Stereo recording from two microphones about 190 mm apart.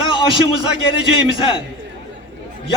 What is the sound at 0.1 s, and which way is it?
A man's voice, 25° left (ahead or behind).